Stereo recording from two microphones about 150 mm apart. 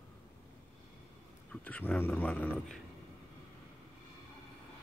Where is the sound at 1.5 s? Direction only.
10° left (ahead or behind).